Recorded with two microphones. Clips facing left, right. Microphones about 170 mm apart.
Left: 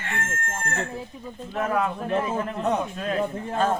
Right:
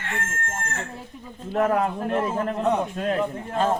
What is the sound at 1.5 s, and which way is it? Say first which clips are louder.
Speech: right 4 dB; 40° right (ahead or behind).